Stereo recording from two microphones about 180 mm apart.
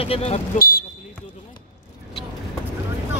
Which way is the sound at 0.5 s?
55° left (ahead or behind).